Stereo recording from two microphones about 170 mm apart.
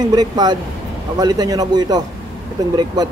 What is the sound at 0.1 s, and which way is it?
Speech, 25° right (ahead or behind).